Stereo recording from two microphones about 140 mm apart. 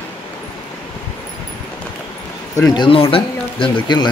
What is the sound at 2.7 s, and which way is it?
Speech, 35° left (ahead or behind).